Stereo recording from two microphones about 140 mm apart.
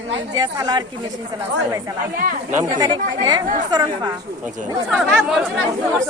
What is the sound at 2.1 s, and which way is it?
Speech, 90° right.